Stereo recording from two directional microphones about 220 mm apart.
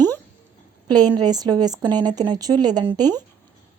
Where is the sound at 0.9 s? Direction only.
20° right (ahead or behind).